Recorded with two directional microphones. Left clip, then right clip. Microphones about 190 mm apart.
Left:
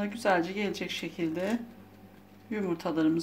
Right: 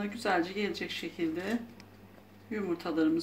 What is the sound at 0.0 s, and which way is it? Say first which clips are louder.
Speech: left 3 dB; 45° left (ahead or behind).